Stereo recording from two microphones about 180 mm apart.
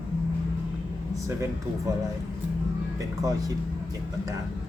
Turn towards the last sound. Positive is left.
turn(degrees=-20)  # may be behind; listen again after turning